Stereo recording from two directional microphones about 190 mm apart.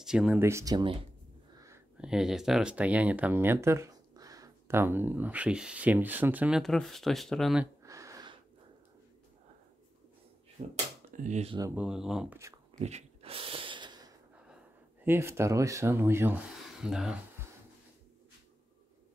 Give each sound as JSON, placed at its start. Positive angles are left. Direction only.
{"t": 0.0, "sound": "speech", "side_deg": -5}
{"t": 2.0, "sound": "speech", "side_deg": -5}
{"t": 7.8, "sound": "a sound", "side_deg": -15}
{"t": 10.6, "sound": "speech", "side_deg": -30}
{"t": 11.7, "sound": "speech", "side_deg": -5}
{"t": 12.7, "sound": "snort", "side_deg": -35}
{"t": 15.0, "sound": "speech", "side_deg": -15}